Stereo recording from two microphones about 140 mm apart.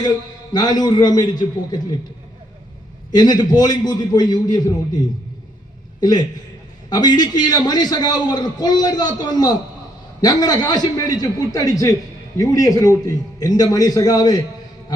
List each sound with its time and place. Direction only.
0.0 s a man's voice: 30° left (ahead or behind)
3.1 s a man's voice: 30° left (ahead or behind)